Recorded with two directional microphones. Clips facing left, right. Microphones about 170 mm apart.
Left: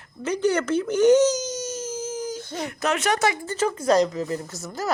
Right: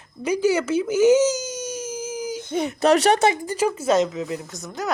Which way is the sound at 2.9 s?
30° right (ahead or behind).